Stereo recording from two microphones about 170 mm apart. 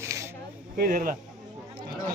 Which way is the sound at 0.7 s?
55° right (ahead or behind).